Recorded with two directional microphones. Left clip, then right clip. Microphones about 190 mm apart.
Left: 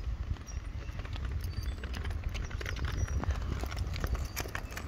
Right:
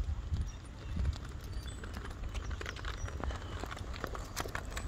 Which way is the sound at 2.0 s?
50° left (ahead or behind).